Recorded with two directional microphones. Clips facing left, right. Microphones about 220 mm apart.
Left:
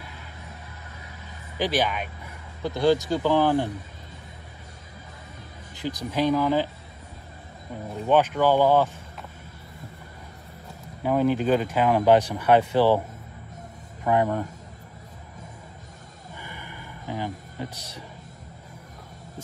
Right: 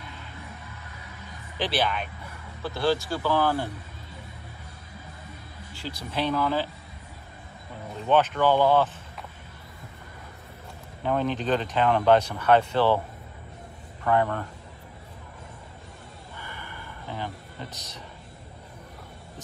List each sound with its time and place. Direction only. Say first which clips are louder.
1.6 s speech: left 2 dB; 15° left (ahead or behind)
5.8 s speech: left 5 dB; 15° left (ahead or behind)
8.0 s speech: left 2 dB; 10° left (ahead or behind)
11.0 s speech: left 4 dB; 10° left (ahead or behind)
14.0 s speech: left 2 dB; 15° left (ahead or behind)
16.3 s a sound: left 1 dB; 15° left (ahead or behind)